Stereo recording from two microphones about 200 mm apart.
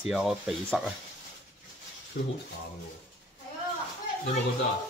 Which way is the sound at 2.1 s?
50° left (ahead or behind).